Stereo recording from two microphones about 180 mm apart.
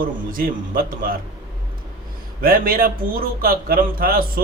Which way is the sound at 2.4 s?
55° right (ahead or behind).